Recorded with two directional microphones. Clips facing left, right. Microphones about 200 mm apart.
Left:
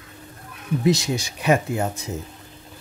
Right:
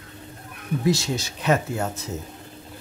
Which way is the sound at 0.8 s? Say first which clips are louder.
Left 2 dB; 15° left (ahead or behind).